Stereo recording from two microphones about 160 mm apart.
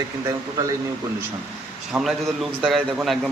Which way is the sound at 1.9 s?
5° right (ahead or behind).